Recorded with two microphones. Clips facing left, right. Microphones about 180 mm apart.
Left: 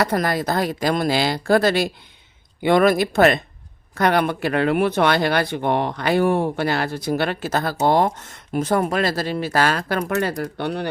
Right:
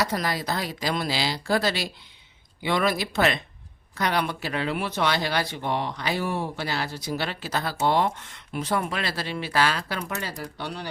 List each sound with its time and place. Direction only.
0.0 s speech: 55° left (ahead or behind)